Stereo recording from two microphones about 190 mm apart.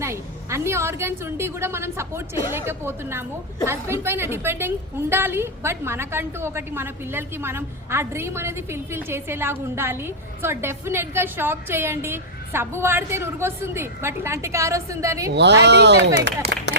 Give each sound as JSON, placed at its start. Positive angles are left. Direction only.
{"t": 0.0, "sound": "a woman's voice", "side_deg": -15}
{"t": 15.3, "sound": "speech", "side_deg": -65}